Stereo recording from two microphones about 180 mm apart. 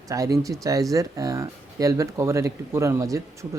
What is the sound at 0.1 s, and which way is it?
Speech, 20° right (ahead or behind).